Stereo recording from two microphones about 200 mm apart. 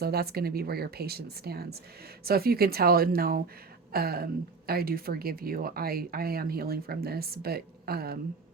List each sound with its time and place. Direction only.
0.0 s a woman's voice: 50° right (ahead or behind)